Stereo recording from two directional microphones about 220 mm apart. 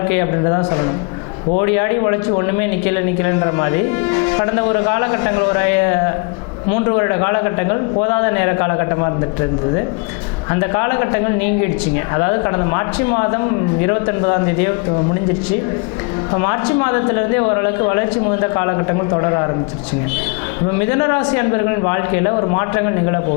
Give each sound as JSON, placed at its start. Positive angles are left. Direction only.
{"t": 0.1, "sound": "speech", "side_deg": 20}
{"t": 10.5, "sound": "speech", "side_deg": 20}
{"t": 16.3, "sound": "speech", "side_deg": 20}
{"t": 20.9, "sound": "speech", "side_deg": 20}